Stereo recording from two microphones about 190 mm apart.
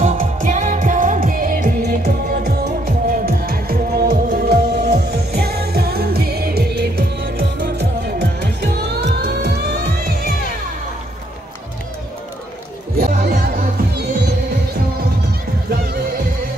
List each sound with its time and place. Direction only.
0.0 s music: 40° right (ahead or behind)
12.9 s music: 50° right (ahead or behind)
15.7 s music: 55° right (ahead or behind)